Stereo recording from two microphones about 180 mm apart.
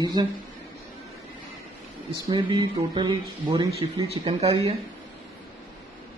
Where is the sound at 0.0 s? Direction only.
20° right (ahead or behind).